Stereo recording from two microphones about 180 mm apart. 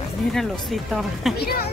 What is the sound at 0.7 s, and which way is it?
Speech, centre (ahead or behind).